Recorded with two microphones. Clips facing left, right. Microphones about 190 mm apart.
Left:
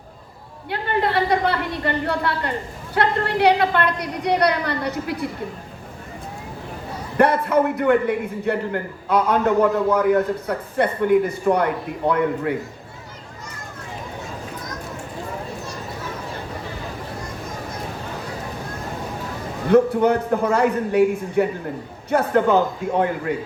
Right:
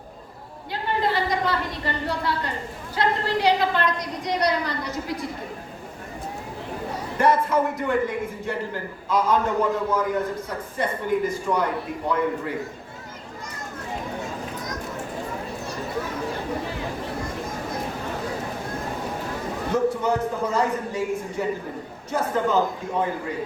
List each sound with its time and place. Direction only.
0.7 s a sound: 60° left (ahead or behind)
2.9 s a man's voice: 60° left (ahead or behind)
7.2 s a man's voice: 65° left (ahead or behind)
19.7 s a man's voice: 60° left (ahead or behind)